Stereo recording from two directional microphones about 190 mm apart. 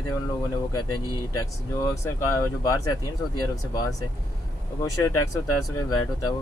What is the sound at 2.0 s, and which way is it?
Speech, 15° left (ahead or behind).